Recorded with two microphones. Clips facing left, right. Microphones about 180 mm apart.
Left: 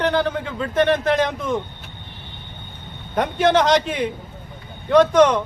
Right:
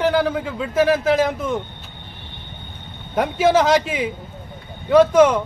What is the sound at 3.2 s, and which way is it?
A man's voice, 5° right (ahead or behind).